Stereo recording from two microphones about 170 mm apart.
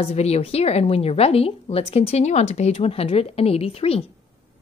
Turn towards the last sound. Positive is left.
turn(degrees=35)  # may be behind; listen again after turning